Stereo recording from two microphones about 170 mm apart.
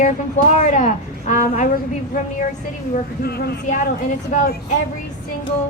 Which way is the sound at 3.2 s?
70° left (ahead or behind).